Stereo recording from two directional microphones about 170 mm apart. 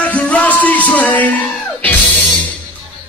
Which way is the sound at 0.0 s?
10° left (ahead or behind).